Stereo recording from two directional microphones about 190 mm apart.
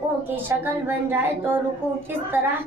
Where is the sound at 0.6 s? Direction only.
10° right (ahead or behind).